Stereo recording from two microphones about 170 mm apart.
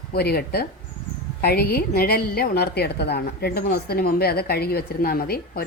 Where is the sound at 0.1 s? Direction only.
65° left (ahead or behind).